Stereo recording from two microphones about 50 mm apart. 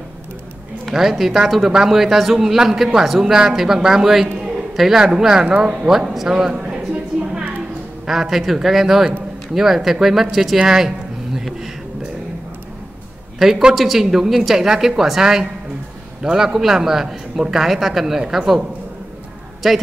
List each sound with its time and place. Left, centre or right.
0.9 s a man's voice: centre
6.5 s a sound: right
8.1 s a man's voice: centre
11.3 s a sound: centre
13.4 s a man's voice: centre
19.6 s speech: centre